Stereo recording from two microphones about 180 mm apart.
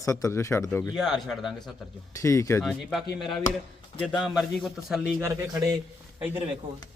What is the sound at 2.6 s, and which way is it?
A man's voice, centre (ahead or behind).